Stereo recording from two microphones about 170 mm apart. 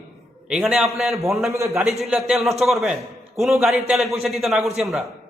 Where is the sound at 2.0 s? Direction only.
Centre (ahead or behind).